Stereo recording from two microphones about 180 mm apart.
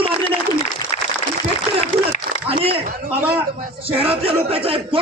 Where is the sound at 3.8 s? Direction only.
30° right (ahead or behind).